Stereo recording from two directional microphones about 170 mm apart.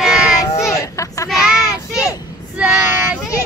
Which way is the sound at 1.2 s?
Centre (ahead or behind).